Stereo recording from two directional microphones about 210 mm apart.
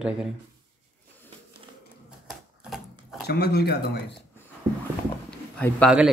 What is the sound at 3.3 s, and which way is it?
Speech, 50° left (ahead or behind).